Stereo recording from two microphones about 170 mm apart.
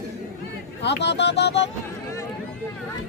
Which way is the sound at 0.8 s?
90° left.